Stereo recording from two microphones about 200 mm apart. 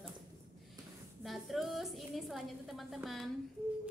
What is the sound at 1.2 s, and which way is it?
A woman's voice, centre (ahead or behind).